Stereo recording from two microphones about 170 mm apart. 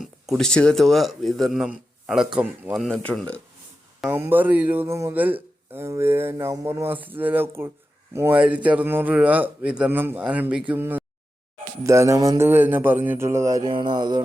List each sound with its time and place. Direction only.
0.0 s speech: centre (ahead or behind)
4.0 s a man's voice: 10° right (ahead or behind)